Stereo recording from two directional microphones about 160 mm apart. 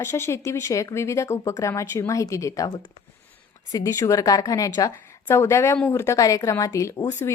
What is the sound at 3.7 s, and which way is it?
Speech, 20° left (ahead or behind).